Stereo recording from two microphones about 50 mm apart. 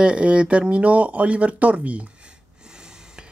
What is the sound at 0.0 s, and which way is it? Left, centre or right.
Speech, right.